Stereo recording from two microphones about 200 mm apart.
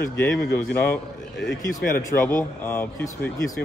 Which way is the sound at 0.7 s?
10° left (ahead or behind).